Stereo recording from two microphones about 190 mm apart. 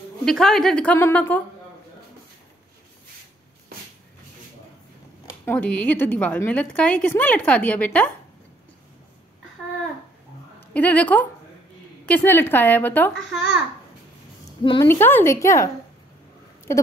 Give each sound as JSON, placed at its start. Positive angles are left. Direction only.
{"t": 0.2, "sound": "a woman's voice", "side_deg": 0}
{"t": 5.2, "sound": "speech", "side_deg": 10}
{"t": 10.7, "sound": "speech", "side_deg": 5}
{"t": 14.6, "sound": "a woman's voice", "side_deg": 25}
{"t": 14.9, "sound": "speech", "side_deg": 10}